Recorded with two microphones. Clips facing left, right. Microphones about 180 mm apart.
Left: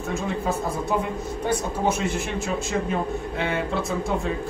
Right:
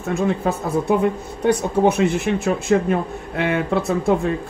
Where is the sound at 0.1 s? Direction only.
60° right (ahead or behind).